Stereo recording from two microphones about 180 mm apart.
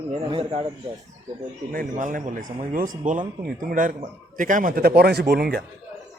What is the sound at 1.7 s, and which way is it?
Speech, 50° right (ahead or behind).